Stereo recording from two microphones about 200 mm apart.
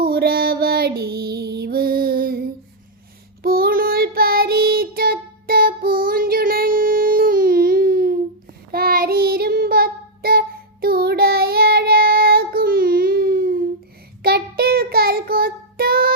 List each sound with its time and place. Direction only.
0.0 s music: 50° right (ahead or behind)
3.4 s child singing: 50° right (ahead or behind)